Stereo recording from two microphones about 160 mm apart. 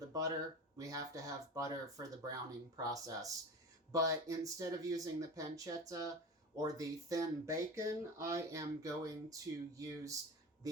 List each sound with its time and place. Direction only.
0.1 s speech: 20° right (ahead or behind)